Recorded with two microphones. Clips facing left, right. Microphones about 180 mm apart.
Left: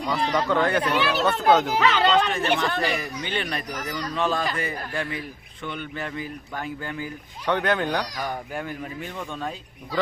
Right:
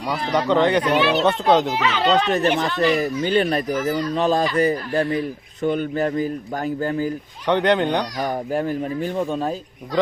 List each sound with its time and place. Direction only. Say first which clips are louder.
0.4 s speech: right 7 dB; 20° right (ahead or behind)
1.0 s a child's voice: right 3 dB; centre (ahead or behind)
2.3 s speech: right 4 dB; 40° right (ahead or behind)
3.7 s speech: right 9 dB; 30° right (ahead or behind)
7.4 s speech: right 5 dB; 20° right (ahead or behind)
8.5 s speech: right 9 dB; 35° right (ahead or behind)